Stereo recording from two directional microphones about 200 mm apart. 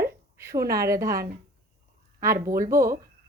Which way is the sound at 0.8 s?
15° right (ahead or behind).